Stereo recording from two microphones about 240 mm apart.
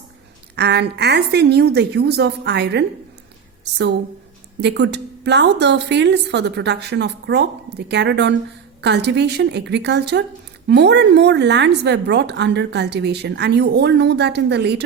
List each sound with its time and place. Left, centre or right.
0.5 s a woman's voice: right